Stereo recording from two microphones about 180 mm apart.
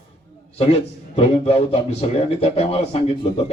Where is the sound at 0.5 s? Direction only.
35° left (ahead or behind).